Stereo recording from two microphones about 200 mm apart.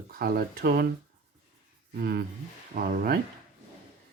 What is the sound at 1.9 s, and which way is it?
Speech, 50° right (ahead or behind).